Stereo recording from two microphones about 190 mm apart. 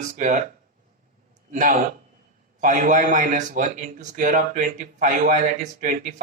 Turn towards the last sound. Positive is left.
turn(degrees=-40)  # may be behind; listen again after turning